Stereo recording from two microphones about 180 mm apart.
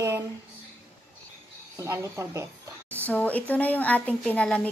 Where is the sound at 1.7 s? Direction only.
15° right (ahead or behind).